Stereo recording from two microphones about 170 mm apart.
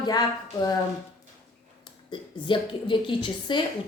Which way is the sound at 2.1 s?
30° left (ahead or behind).